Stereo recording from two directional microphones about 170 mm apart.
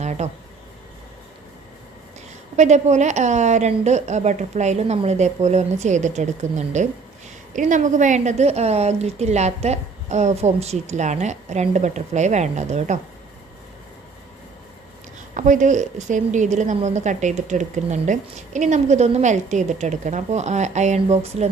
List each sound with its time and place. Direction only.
0.0 s a sound: 40° right (ahead or behind)
2.6 s a woman's voice: 40° right (ahead or behind)
15.4 s a woman's voice: 45° right (ahead or behind)